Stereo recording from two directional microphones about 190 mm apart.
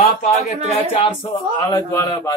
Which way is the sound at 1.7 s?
20° left (ahead or behind).